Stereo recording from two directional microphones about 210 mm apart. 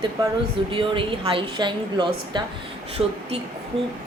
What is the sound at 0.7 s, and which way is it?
Speech, 25° right (ahead or behind).